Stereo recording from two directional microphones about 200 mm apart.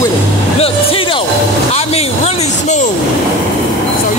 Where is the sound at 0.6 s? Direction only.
25° left (ahead or behind).